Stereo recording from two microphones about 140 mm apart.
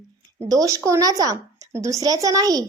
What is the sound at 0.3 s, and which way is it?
A woman's voice, 25° right (ahead or behind).